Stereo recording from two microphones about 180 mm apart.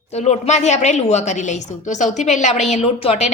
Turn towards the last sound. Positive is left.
turn(degrees=35)  # may be behind; listen again after turning